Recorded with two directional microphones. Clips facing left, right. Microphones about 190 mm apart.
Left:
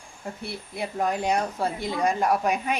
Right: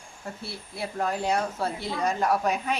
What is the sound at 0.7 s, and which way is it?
Speech, 15° left (ahead or behind).